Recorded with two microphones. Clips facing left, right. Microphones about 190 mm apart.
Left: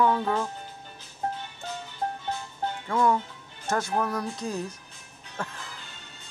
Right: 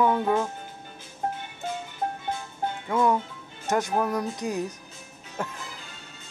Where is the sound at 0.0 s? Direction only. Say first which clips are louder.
Right 2 dB; 15° right (ahead or behind).